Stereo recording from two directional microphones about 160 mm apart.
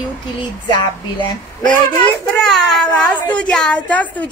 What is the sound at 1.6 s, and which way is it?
A woman's voice, 5° left (ahead or behind).